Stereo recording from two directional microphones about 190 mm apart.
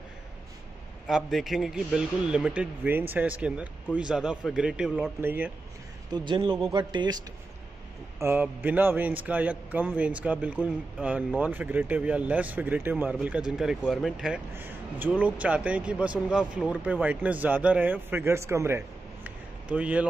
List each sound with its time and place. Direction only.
1.0 s a man's voice: centre (ahead or behind)
6.0 s speech: 25° right (ahead or behind)
8.2 s a man's voice: 10° right (ahead or behind)